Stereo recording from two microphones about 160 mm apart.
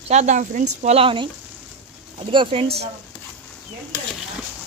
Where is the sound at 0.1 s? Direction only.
45° right (ahead or behind).